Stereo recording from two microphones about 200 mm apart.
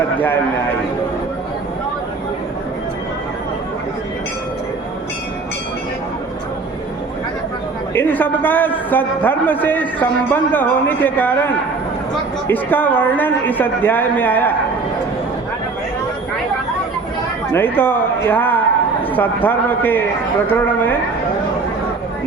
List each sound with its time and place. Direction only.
7.9 s a man's voice: 10° left (ahead or behind)
12.5 s a man's voice: 10° left (ahead or behind)
17.5 s a man's voice: 10° left (ahead or behind)